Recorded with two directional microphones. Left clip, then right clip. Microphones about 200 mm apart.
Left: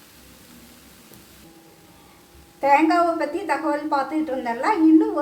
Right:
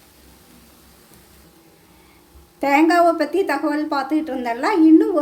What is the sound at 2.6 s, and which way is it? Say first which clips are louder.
A woman's voice: right 2 dB; 45° right (ahead or behind).